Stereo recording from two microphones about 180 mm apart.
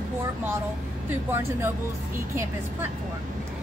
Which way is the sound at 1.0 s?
10° right (ahead or behind).